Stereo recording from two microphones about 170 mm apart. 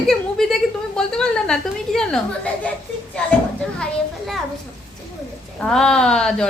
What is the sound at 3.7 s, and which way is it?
Speech, centre (ahead or behind).